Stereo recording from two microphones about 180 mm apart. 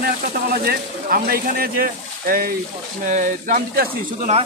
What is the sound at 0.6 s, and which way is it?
Speech, 55° right (ahead or behind).